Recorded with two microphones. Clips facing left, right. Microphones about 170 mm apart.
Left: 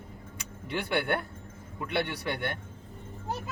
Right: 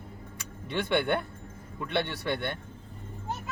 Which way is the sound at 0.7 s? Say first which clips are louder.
Right 2 dB; 5° left (ahead or behind).